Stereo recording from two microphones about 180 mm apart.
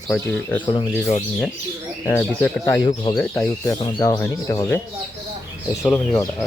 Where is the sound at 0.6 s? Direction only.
25° left (ahead or behind).